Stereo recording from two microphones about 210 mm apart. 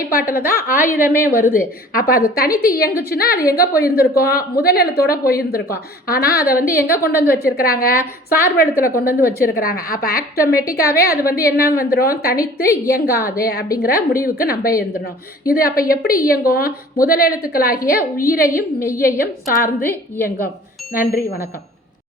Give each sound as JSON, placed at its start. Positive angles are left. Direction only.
{"t": 0.3, "sound": "a woman's voice", "side_deg": 45}
{"t": 18.8, "sound": "a woman's voice", "side_deg": 15}
{"t": 19.0, "sound": "a woman's voice", "side_deg": 40}
{"t": 19.8, "sound": "a woman's voice", "side_deg": 10}
{"t": 20.9, "sound": "a woman's voice", "side_deg": 45}